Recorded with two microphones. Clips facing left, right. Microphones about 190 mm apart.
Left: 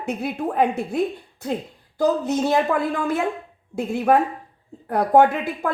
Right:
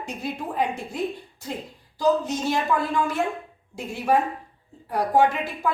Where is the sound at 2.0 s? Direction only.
60° left (ahead or behind).